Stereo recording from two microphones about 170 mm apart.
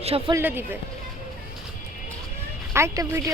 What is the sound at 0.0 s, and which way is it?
Speech, 35° right (ahead or behind).